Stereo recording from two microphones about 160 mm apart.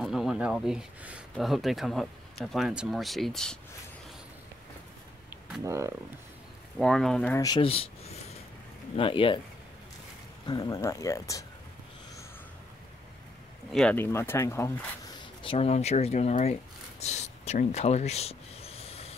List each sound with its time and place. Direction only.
0.0 s speech: centre (ahead or behind)
5.6 s speech: 20° right (ahead or behind)
6.8 s speech: 5° left (ahead or behind)
7.3 s speech: 25° left (ahead or behind)
7.6 s a sound: 35° left (ahead or behind)
8.9 s speech: 35° left (ahead or behind)
10.4 s speech: 25° left (ahead or behind)
13.7 s speech: centre (ahead or behind)
13.9 s speech: 15° left (ahead or behind)
15.4 s speech: 35° left (ahead or behind)
17.0 s a sound: 45° left (ahead or behind)